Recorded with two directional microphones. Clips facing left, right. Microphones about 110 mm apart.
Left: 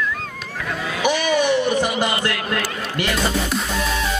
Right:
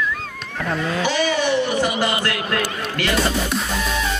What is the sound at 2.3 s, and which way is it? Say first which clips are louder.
Speech: right 1 dB; 15° right (ahead or behind).